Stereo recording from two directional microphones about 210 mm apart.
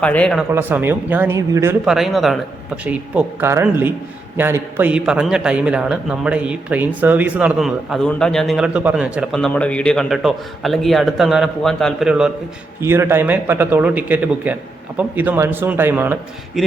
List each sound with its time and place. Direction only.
0.0 s a man's voice: 5° left (ahead or behind)
0.5 s a man's voice: 10° right (ahead or behind)
1.8 s a man's voice: centre (ahead or behind)